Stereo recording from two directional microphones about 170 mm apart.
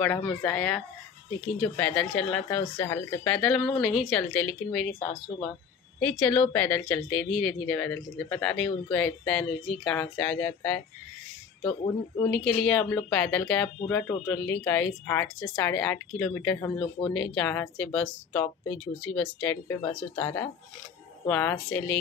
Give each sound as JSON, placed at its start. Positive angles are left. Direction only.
{"t": 0.0, "sound": "speech", "side_deg": 10}
{"t": 2.6, "sound": "speech", "side_deg": 15}
{"t": 3.3, "sound": "a woman's voice", "side_deg": 5}
{"t": 5.9, "sound": "speech", "side_deg": 10}
{"t": 11.6, "sound": "speech", "side_deg": 25}
{"t": 12.3, "sound": "a woman's voice", "side_deg": 5}